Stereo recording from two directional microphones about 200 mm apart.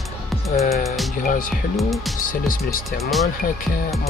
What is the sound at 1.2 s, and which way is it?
Speech, 45° left (ahead or behind).